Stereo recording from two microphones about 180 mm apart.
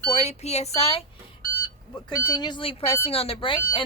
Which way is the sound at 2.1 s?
25° left (ahead or behind).